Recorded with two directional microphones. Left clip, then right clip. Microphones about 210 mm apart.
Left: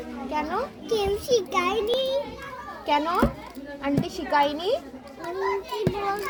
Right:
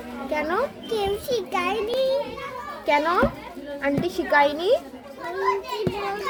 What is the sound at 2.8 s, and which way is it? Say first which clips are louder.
A woman's voice: right 3 dB; 35° right (ahead or behind).